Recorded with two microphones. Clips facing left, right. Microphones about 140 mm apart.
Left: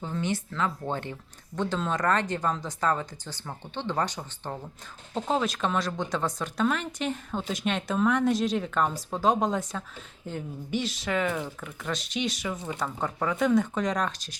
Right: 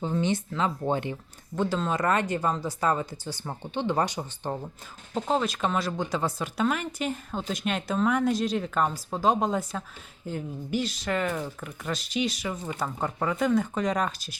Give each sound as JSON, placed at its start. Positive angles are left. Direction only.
{"t": 0.0, "sound": "speech", "side_deg": -20}
{"t": 1.5, "sound": "speech", "side_deg": -5}
{"t": 5.1, "sound": "speech", "side_deg": 0}